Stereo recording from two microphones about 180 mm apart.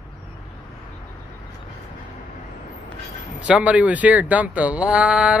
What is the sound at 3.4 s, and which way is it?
Speech, 5° right (ahead or behind).